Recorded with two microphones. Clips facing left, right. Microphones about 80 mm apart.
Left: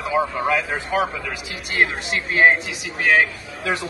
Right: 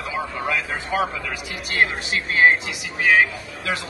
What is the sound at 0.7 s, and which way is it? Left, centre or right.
Speech, centre.